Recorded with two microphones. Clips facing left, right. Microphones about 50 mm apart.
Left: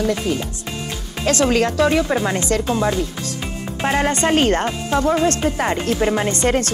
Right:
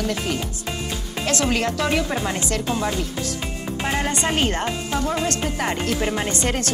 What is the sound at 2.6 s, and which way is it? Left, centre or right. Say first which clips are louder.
Speech: left 4 dB; left.